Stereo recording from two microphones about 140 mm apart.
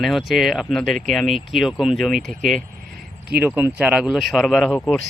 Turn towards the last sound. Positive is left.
turn(degrees=0)  # may be behind; listen again after turning